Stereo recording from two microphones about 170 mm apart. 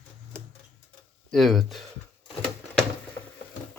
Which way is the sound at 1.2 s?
Centre (ahead or behind).